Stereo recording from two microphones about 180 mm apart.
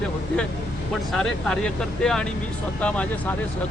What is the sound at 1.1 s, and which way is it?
Speech, 5° left (ahead or behind).